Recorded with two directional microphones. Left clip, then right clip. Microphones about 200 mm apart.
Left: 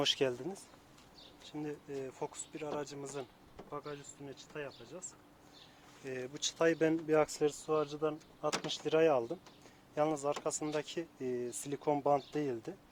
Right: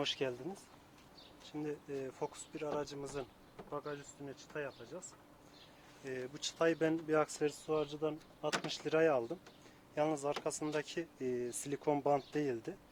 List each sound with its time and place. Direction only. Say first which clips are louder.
0.0 s speech: left 5 dB; 45° left (ahead or behind)
1.5 s speech: even; 20° left (ahead or behind)
6.1 s speech: left 3 dB; 35° left (ahead or behind); by 12.7 s 15° left (ahead or behind)